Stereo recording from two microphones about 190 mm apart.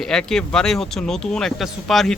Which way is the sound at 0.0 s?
5° left (ahead or behind).